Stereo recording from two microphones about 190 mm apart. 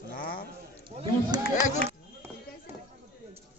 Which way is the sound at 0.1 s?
50° left (ahead or behind).